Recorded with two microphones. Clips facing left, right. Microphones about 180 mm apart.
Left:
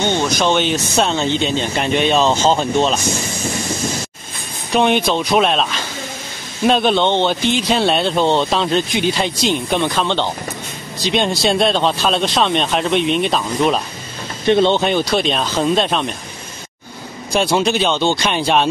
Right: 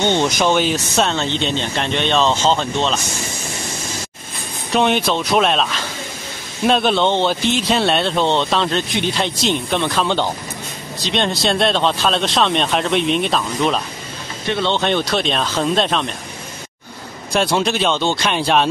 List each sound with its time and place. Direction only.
0.0 s speech: 20° right (ahead or behind)
0.4 s speech: 5° right (ahead or behind)
4.7 s speech: centre (ahead or behind)
10.0 s speech: 5° right (ahead or behind)
11.1 s speech: 5° left (ahead or behind)
14.5 s speech: 20° left (ahead or behind)
14.8 s speech: 5° left (ahead or behind)
17.3 s speech: centre (ahead or behind)